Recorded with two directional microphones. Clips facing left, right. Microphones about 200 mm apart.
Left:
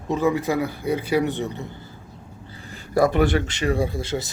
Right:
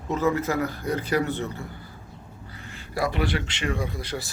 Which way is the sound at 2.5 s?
35° left (ahead or behind).